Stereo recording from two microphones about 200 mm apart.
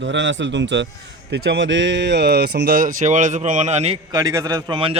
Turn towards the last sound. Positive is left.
turn(degrees=-25)  # may be behind; listen again after turning